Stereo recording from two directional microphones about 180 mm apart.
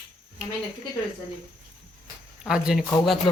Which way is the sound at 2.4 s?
5° right (ahead or behind).